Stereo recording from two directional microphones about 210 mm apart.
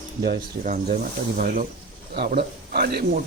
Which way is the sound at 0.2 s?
45° right (ahead or behind).